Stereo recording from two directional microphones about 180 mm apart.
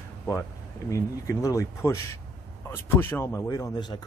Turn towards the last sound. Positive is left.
turn(degrees=20)  # may be behind; listen again after turning